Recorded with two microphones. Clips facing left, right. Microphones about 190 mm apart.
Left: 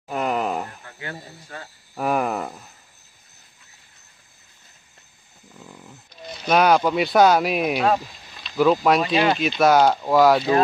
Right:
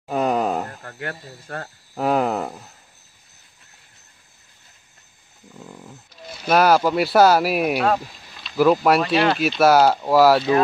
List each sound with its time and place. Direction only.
0.1 s wail: 15° right (ahead or behind)
0.8 s speech: 60° right (ahead or behind)
2.0 s speech: 20° right (ahead or behind)
6.2 s speech: 5° right (ahead or behind)